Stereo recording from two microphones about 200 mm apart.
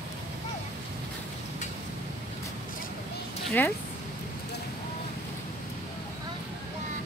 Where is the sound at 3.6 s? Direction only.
10° left (ahead or behind).